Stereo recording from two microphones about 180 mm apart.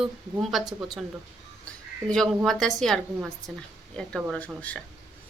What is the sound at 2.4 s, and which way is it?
A woman's voice, centre (ahead or behind).